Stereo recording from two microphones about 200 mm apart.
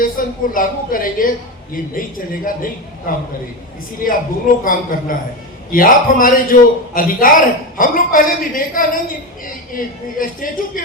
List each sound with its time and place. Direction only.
0.0 s a man's voice: 45° left (ahead or behind)
4.6 s a man's voice: 45° left (ahead or behind)